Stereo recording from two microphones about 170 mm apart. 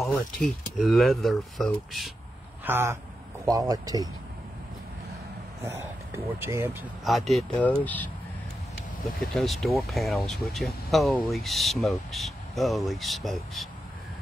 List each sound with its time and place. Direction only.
0.7 s speech: centre (ahead or behind)
2.6 s speech: 15° right (ahead or behind)
5.6 s speech: 15° right (ahead or behind)
7.1 s speech: centre (ahead or behind)
9.2 s speech: centre (ahead or behind)